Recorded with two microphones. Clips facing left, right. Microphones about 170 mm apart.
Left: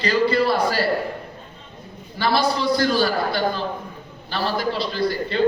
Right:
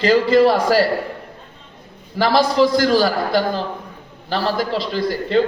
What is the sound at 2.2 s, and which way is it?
A man's voice, 90° right.